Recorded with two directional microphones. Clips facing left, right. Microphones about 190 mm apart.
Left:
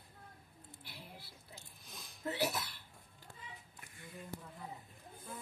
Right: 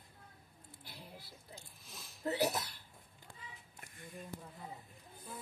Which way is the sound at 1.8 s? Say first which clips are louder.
Even; centre (ahead or behind).